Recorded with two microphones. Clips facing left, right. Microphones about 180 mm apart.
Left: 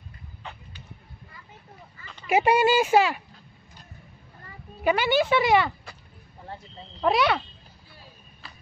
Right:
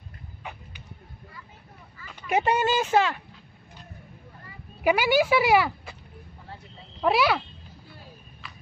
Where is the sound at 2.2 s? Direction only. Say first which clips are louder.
Left 3 dB; 10° left (ahead or behind).